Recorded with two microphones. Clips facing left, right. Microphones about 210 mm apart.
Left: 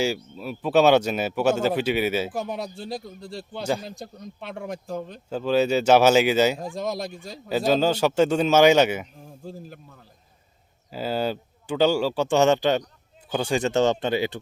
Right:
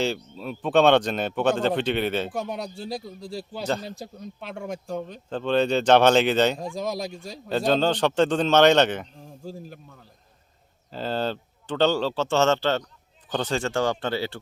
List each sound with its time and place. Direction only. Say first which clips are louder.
0.0 s speech: left 1 dB; 5° left (ahead or behind)